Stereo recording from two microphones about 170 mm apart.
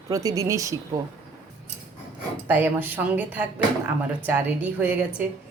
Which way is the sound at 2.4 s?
10° right (ahead or behind).